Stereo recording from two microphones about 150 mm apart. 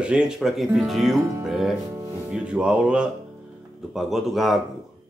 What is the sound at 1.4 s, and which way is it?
Speech, 5° right (ahead or behind).